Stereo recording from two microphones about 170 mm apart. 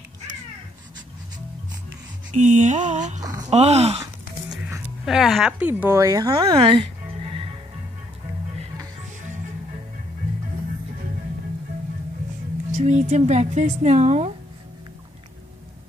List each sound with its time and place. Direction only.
2.4 s speech: 45° right (ahead or behind)
3.2 s speech: 20° right (ahead or behind)
3.4 s speech: 40° right (ahead or behind)
4.5 s speech: centre (ahead or behind); by 6.3 s 20° right (ahead or behind)
6.3 s music: 35° right (ahead or behind)
12.7 s speech: 45° right (ahead or behind)